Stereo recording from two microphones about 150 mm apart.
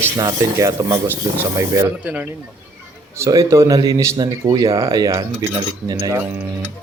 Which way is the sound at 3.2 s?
20° right (ahead or behind).